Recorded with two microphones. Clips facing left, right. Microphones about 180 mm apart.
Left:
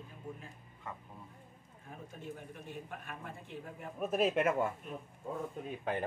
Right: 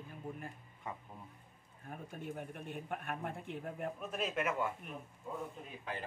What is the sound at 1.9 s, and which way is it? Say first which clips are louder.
A man's voice: right 1 dB; 55° right (ahead or behind).